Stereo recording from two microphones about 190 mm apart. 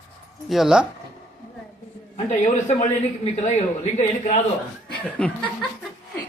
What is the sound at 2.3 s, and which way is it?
A man's voice, 40° left (ahead or behind).